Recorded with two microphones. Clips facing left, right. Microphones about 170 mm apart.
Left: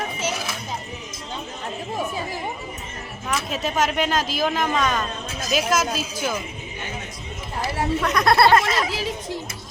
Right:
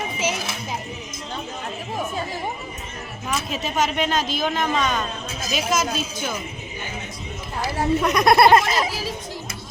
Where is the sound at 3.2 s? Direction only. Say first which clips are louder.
Left 1 dB; centre (ahead or behind).